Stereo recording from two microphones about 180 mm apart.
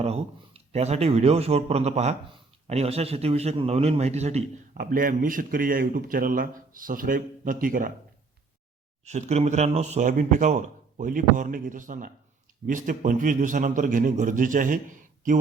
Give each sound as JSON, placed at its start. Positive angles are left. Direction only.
{"t": 0.0, "sound": "a man's voice", "side_deg": -35}
{"t": 4.8, "sound": "a man's voice", "side_deg": -50}
{"t": 9.0, "sound": "a man's voice", "side_deg": -40}